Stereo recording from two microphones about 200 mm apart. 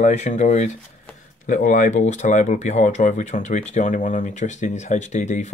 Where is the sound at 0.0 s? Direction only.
35° left (ahead or behind).